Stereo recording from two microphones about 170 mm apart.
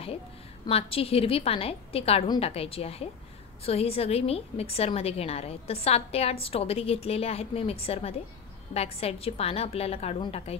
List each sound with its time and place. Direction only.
0.7 s a woman's voice: 35° left (ahead or behind)